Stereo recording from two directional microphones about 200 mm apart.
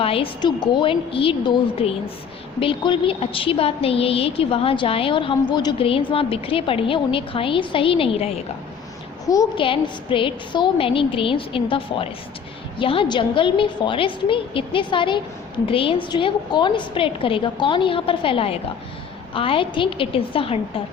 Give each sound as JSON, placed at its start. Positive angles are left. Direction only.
{"t": 0.0, "sound": "a woman's voice", "side_deg": 30}
{"t": 9.2, "sound": "a woman's voice", "side_deg": 15}